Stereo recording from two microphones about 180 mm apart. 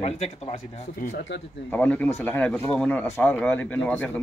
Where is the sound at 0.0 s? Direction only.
35° left (ahead or behind).